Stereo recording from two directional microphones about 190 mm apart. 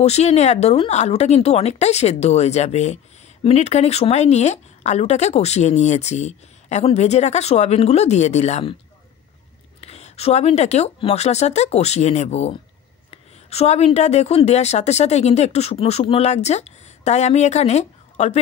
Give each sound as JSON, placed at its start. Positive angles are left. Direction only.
{"t": 0.0, "sound": "speech", "side_deg": 35}
{"t": 9.8, "sound": "speech", "side_deg": 35}